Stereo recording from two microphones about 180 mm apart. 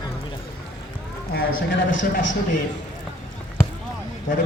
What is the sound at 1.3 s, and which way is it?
Speech, 60° left (ahead or behind).